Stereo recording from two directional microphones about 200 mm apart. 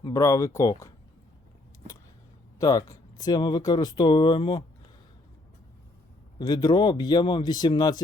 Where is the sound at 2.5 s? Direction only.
15° left (ahead or behind).